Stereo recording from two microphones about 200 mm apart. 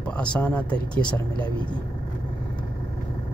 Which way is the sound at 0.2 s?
5° left (ahead or behind).